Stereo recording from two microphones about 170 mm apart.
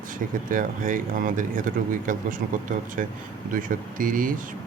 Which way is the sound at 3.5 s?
55° right (ahead or behind).